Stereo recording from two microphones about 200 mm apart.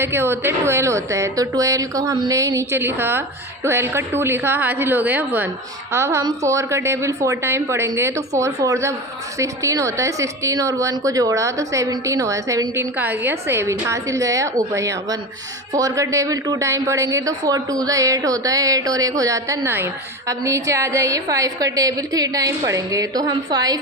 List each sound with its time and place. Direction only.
0.0 s speech: 10° right (ahead or behind)